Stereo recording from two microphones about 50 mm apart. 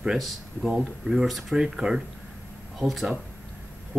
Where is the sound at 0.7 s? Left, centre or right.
Centre.